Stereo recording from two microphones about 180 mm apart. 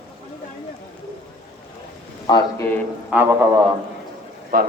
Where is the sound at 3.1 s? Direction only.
10° right (ahead or behind).